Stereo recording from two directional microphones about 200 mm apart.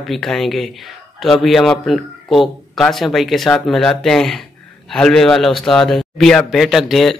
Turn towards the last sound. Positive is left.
turn(degrees=0)  # may be behind; listen again after turning